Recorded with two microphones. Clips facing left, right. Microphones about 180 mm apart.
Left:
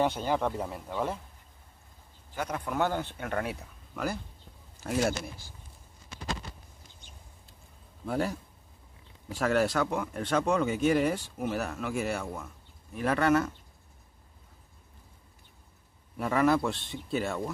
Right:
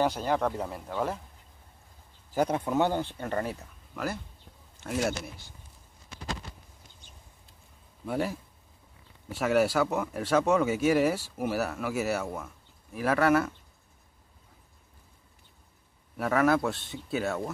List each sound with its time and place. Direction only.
0.2 s speech: centre (ahead or behind)
2.3 s speech: 30° right (ahead or behind); by 3.2 s 15° right (ahead or behind)
3.2 s speech: 5° left (ahead or behind)
8.0 s speech: centre (ahead or behind)
16.2 s speech: centre (ahead or behind)